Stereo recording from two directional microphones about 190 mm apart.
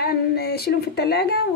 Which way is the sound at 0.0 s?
55° left (ahead or behind).